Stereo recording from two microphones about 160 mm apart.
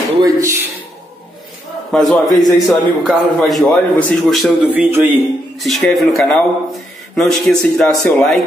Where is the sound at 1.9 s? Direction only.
Centre (ahead or behind).